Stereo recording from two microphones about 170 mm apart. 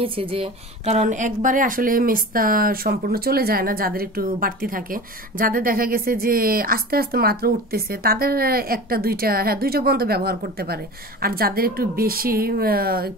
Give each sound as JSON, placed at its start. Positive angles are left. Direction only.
{"t": 0.0, "sound": "speech", "side_deg": -30}